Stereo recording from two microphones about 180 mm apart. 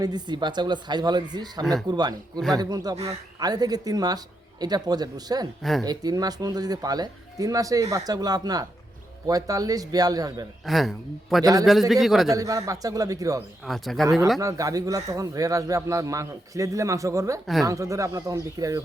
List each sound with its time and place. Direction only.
0.0 s speech: 25° right (ahead or behind)
10.7 s a man's voice: centre (ahead or behind)
12.3 s speech: 20° right (ahead or behind)
13.7 s a man's voice: centre (ahead or behind)
14.3 s speech: 20° right (ahead or behind)
17.4 s a man's voice: centre (ahead or behind)
17.7 s speech: 15° right (ahead or behind)